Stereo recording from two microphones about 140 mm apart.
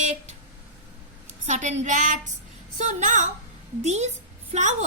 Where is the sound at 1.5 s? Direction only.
55° right (ahead or behind).